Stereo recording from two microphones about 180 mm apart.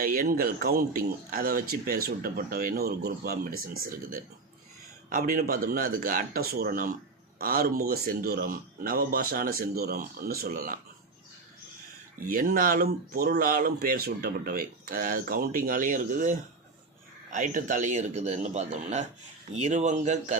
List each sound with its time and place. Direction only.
0.0 s speech: 50° right (ahead or behind)
12.3 s a man's voice: 50° right (ahead or behind)